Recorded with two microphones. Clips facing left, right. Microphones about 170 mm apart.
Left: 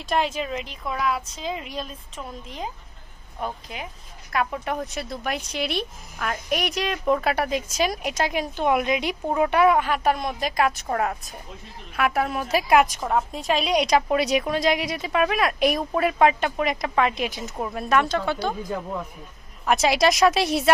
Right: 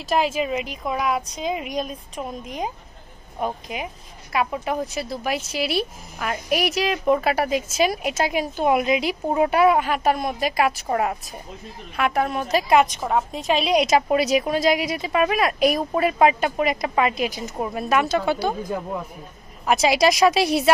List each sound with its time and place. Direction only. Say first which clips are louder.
0.0 s a woman's voice: right 3 dB; 5° right (ahead or behind)
19.6 s a woman's voice: right 2 dB; centre (ahead or behind)